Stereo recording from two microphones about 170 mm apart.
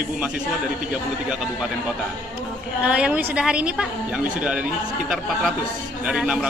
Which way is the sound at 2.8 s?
5° right (ahead or behind).